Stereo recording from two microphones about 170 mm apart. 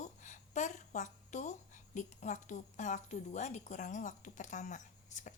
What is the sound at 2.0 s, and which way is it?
A woman's voice, 45° left (ahead or behind).